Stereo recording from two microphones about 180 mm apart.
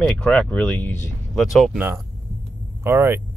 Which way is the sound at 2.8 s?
15° right (ahead or behind).